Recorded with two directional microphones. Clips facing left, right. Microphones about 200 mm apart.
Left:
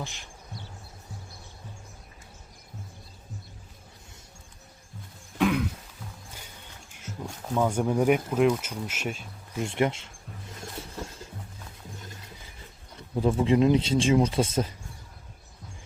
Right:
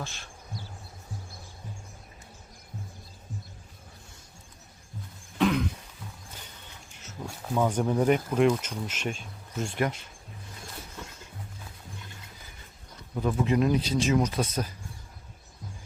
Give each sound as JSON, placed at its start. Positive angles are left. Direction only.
{"t": 0.0, "sound": "speech", "side_deg": 15}
{"t": 5.4, "sound": "throat clearing", "side_deg": 10}
{"t": 7.3, "sound": "speech", "side_deg": -5}
{"t": 7.7, "sound": "speech", "side_deg": 10}
{"t": 9.6, "sound": "speech", "side_deg": 25}
{"t": 10.9, "sound": "music", "side_deg": 35}
{"t": 13.1, "sound": "speech", "side_deg": 30}